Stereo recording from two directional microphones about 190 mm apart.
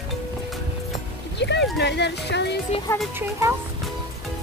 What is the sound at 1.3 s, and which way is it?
Speech, 65° left (ahead or behind).